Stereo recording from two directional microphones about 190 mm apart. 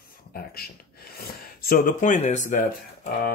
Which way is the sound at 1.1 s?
50° left (ahead or behind).